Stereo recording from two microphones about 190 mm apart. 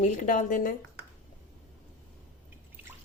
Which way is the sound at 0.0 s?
40° left (ahead or behind).